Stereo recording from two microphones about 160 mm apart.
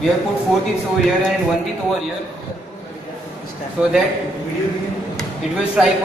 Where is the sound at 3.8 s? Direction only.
5° right (ahead or behind).